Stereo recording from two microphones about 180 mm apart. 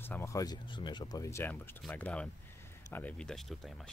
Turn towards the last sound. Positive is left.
turn(degrees=0)  # may be behind; listen again after turning